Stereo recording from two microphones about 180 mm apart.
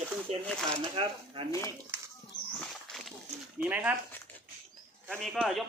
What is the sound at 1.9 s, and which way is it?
Children playing, 15° right (ahead or behind).